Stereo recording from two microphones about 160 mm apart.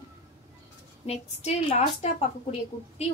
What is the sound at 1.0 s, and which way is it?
A woman's voice, 40° left (ahead or behind).